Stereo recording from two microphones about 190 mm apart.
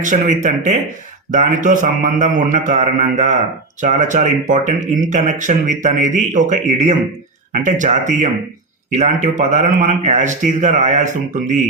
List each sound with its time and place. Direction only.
0.0 s speech: 40° right (ahead or behind)